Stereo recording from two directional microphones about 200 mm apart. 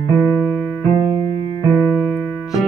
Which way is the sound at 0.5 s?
10° left (ahead or behind).